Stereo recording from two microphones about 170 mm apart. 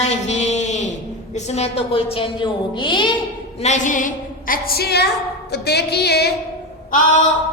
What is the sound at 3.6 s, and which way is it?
Speech, 45° left (ahead or behind).